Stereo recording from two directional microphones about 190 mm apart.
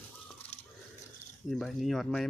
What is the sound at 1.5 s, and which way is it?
Speech, centre (ahead or behind).